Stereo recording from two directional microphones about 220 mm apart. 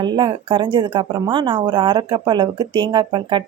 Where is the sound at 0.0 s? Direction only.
20° right (ahead or behind).